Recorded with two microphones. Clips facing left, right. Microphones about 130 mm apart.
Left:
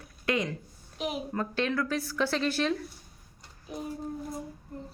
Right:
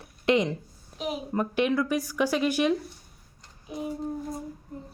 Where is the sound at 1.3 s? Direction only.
15° right (ahead or behind).